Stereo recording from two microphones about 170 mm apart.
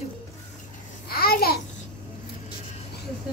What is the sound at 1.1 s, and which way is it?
Babbling, 65° left (ahead or behind).